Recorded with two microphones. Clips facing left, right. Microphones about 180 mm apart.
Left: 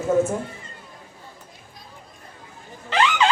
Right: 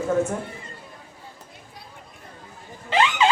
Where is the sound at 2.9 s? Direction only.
20° right (ahead or behind).